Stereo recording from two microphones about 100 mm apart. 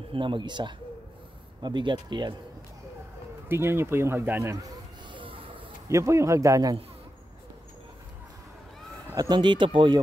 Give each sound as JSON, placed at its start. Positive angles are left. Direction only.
{"t": 0.1, "sound": "speech", "side_deg": -55}
{"t": 3.4, "sound": "speech", "side_deg": -25}
{"t": 5.1, "sound": "a sound", "side_deg": -60}
{"t": 5.9, "sound": "a man's voice", "side_deg": -30}
{"t": 9.1, "sound": "speech", "side_deg": -40}